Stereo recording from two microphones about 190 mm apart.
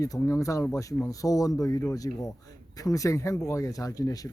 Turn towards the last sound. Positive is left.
turn(degrees=20)  # may be behind; listen again after turning